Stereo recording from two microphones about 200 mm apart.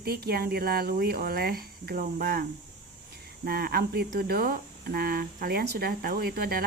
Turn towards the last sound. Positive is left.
turn(degrees=-50)  # may be behind; listen again after turning